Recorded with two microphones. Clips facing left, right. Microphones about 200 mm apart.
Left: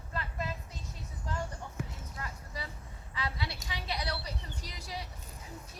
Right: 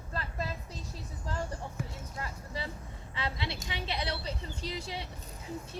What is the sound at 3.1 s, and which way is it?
A woman's voice, 25° right (ahead or behind).